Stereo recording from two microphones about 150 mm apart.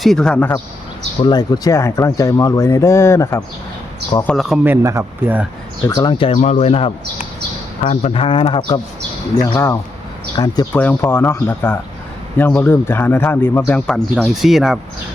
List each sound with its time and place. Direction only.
0.0 s a man's voice: 5° left (ahead or behind)
1.2 s speech: 25° left (ahead or behind)
4.3 s a man's voice: centre (ahead or behind)
4.6 s speech: 15° right (ahead or behind)
5.9 s speech: 25° left (ahead or behind)
6.3 s speech: 50° left (ahead or behind)
9.4 s speech: 20° left (ahead or behind)
10.8 s a man's voice: 15° left (ahead or behind); by 14.8 s 5° right (ahead or behind)